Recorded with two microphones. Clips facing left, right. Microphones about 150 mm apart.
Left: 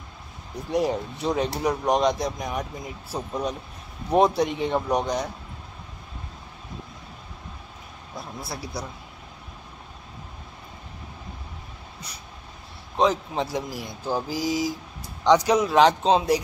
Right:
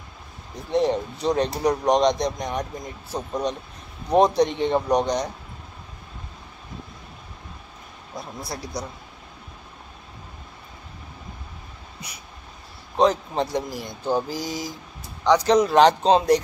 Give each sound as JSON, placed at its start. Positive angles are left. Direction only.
{"t": 0.7, "sound": "speech", "side_deg": 10}
{"t": 8.2, "sound": "speech", "side_deg": 5}
{"t": 12.9, "sound": "speech", "side_deg": 0}
{"t": 15.2, "sound": "a man's voice", "side_deg": 20}
{"t": 15.5, "sound": "speech", "side_deg": 0}